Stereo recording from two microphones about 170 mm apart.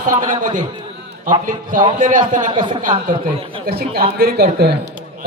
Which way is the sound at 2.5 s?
30° right (ahead or behind).